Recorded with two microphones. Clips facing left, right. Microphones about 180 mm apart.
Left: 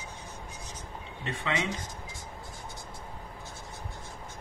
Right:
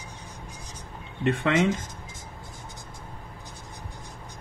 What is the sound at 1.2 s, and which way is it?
Speech, 60° right (ahead or behind).